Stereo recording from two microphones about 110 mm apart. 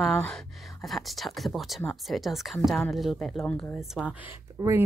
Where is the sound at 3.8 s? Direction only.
5° right (ahead or behind).